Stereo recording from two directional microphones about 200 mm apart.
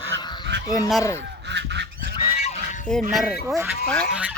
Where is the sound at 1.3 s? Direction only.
60° right (ahead or behind).